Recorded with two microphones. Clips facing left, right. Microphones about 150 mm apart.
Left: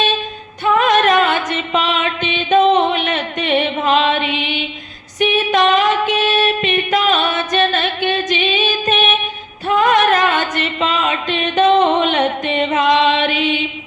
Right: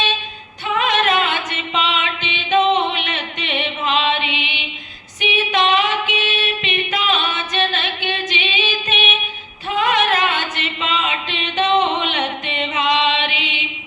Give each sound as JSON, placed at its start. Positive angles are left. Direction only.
{"t": 0.6, "sound": "music", "side_deg": 45}